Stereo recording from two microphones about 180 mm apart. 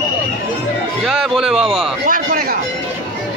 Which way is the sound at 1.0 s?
Centre (ahead or behind).